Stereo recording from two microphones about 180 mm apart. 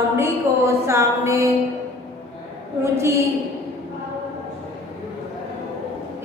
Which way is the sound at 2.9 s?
15° right (ahead or behind).